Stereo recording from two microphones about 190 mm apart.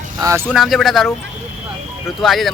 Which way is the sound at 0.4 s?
Centre (ahead or behind).